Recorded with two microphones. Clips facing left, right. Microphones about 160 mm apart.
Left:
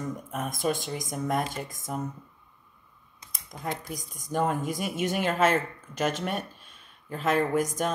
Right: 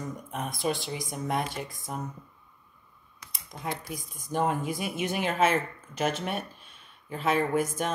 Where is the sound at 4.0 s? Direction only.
45° left (ahead or behind).